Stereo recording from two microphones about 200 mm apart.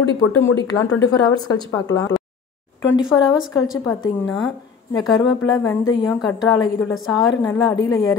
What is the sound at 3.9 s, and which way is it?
A woman's voice, 15° left (ahead or behind).